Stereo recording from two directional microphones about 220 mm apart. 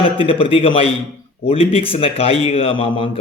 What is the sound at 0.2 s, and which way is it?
A man's voice, 25° left (ahead or behind).